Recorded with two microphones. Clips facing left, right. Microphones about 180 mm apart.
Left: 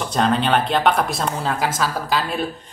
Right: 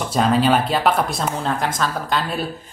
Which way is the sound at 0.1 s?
5° right (ahead or behind).